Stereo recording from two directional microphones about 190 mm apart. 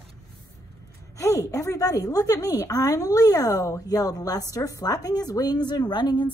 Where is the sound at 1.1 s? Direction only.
15° left (ahead or behind).